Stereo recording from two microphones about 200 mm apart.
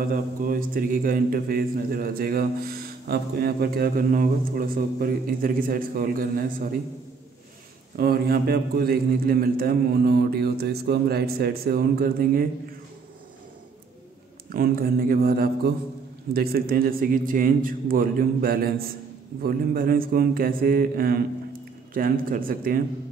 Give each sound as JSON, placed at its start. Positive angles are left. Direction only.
{"t": 0.1, "sound": "a man's voice", "side_deg": -45}
{"t": 7.9, "sound": "a man's voice", "side_deg": -50}
{"t": 14.5, "sound": "a man's voice", "side_deg": -45}